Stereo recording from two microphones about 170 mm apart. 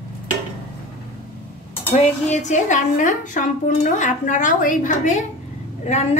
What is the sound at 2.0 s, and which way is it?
A woman's voice, 45° left (ahead or behind).